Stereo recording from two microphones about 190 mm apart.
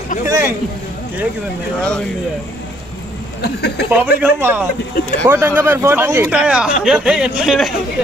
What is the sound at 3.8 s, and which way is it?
Speech, 10° right (ahead or behind).